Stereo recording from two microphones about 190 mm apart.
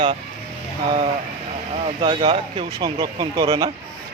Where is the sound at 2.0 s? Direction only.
30° right (ahead or behind).